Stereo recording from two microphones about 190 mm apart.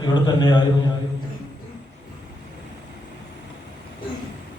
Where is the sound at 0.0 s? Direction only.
25° left (ahead or behind).